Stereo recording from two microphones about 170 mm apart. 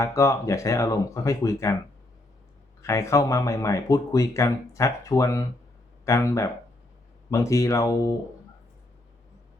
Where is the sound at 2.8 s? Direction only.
15° left (ahead or behind).